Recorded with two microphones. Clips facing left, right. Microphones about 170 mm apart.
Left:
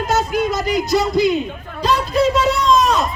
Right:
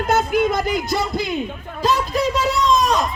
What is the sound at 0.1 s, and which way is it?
Speech, 55° right (ahead or behind).